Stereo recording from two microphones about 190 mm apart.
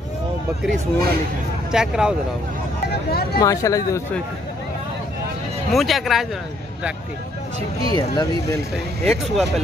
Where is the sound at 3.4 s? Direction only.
15° left (ahead or behind).